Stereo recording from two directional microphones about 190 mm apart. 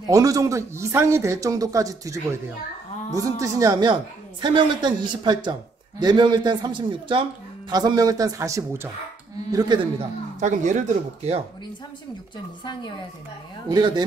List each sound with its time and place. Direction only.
0.0 s a man's voice: 15° right (ahead or behind)
9.9 s a woman's voice: 40° right (ahead or behind)
13.7 s a woman's voice: 20° right (ahead or behind)